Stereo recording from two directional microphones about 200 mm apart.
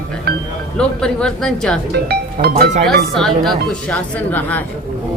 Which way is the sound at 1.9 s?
55° right (ahead or behind).